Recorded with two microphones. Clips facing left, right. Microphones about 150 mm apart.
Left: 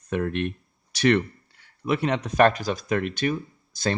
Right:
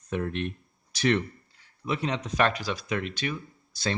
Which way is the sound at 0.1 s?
60° left (ahead or behind).